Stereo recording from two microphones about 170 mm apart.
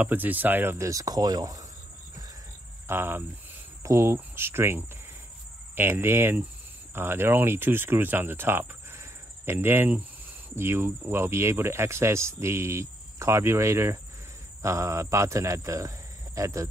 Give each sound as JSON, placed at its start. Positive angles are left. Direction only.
{"t": 0.0, "sound": "speech", "side_deg": -10}
{"t": 2.9, "sound": "speech", "side_deg": -15}